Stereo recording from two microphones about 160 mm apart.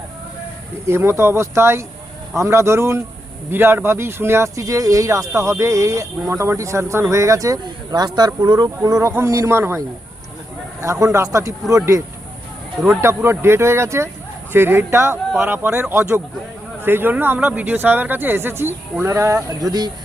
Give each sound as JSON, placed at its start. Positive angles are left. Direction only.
{"t": 0.9, "sound": "speech", "side_deg": -15}
{"t": 11.0, "sound": "speech", "side_deg": -20}